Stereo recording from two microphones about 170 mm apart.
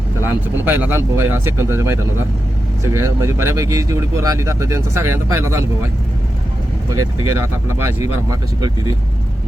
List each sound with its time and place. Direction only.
0.3 s speech: 10° right (ahead or behind)
6.9 s speech: 20° right (ahead or behind)